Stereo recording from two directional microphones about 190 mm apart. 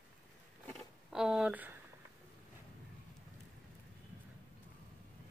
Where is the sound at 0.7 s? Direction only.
5° right (ahead or behind).